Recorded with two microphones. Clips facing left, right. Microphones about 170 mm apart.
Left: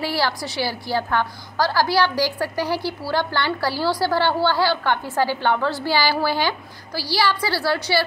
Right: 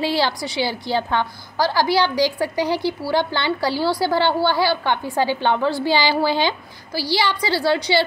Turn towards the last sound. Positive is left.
turn(degrees=-20)  # may be behind; listen again after turning